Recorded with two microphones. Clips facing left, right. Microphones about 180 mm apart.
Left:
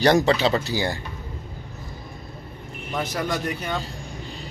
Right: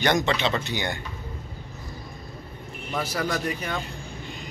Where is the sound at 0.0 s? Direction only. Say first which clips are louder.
Left 5 dB; 35° left (ahead or behind).